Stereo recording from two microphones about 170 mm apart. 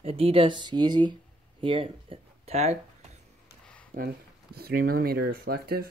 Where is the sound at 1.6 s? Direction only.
30° right (ahead or behind).